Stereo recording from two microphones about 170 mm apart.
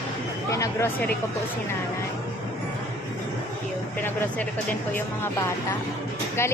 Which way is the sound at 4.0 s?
10° left (ahead or behind).